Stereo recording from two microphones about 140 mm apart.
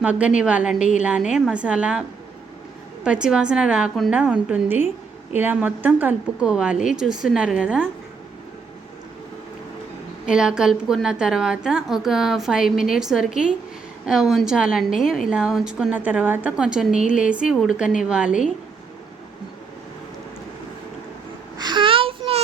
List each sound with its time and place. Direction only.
0.0 s a woman's voice: 10° right (ahead or behind)
10.2 s a woman's voice: 5° right (ahead or behind)
21.6 s a sound: 35° right (ahead or behind)